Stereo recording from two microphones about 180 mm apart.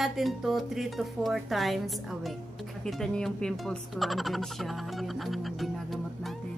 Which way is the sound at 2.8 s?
5° left (ahead or behind).